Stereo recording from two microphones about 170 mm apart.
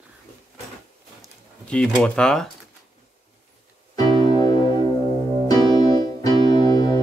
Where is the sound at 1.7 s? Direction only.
5° left (ahead or behind).